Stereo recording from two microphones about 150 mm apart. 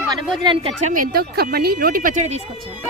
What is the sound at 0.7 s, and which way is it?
Speech, 55° right (ahead or behind).